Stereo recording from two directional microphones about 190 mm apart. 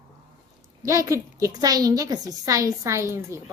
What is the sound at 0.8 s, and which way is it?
A woman's voice, 15° right (ahead or behind).